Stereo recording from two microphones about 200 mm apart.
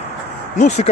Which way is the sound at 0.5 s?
35° left (ahead or behind).